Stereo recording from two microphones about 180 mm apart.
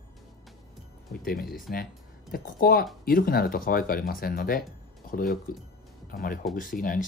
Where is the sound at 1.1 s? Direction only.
55° left (ahead or behind).